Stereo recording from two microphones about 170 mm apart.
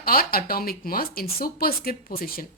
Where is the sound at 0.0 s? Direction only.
60° left (ahead or behind).